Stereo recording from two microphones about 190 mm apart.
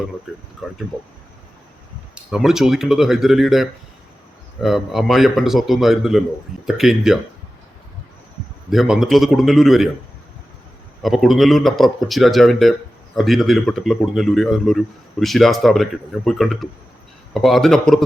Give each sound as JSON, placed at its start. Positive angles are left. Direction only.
{"t": 0.6, "sound": "speech", "side_deg": 0}
{"t": 2.1, "sound": "speech", "side_deg": -5}
{"t": 8.7, "sound": "speech", "side_deg": 0}
{"t": 11.0, "sound": "speech", "side_deg": 0}